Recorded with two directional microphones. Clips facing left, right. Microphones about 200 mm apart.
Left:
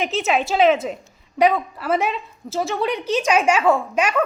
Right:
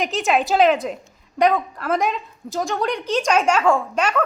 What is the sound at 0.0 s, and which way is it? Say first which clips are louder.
A woman's voice: right 1 dB; 5° left (ahead or behind).